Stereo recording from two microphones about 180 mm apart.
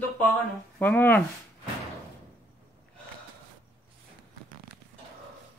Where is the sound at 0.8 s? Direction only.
10° left (ahead or behind).